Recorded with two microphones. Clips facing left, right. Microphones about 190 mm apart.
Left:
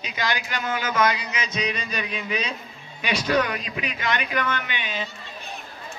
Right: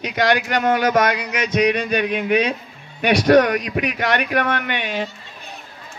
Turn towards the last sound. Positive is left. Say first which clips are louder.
# right 7 dB
turn(degrees=-65)  # may be behind; listen again after turning